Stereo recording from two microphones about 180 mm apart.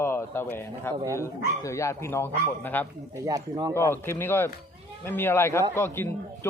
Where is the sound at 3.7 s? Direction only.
15° left (ahead or behind).